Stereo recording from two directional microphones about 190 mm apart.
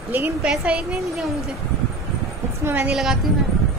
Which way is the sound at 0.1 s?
5° right (ahead or behind).